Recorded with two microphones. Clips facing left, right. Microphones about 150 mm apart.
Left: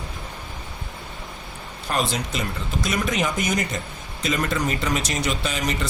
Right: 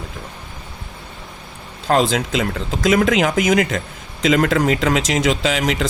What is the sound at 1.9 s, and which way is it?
Speech, 90° right.